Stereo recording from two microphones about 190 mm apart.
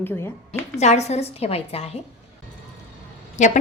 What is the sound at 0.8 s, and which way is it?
A woman's voice, 35° left (ahead or behind).